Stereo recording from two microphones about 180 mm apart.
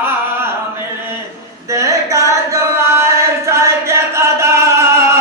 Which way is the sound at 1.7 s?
15° right (ahead or behind).